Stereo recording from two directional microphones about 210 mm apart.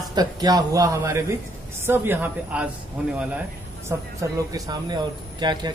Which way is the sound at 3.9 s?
15° right (ahead or behind).